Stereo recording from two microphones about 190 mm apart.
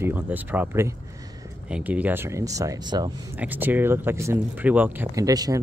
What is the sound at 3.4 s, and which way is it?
Speech, 10° right (ahead or behind).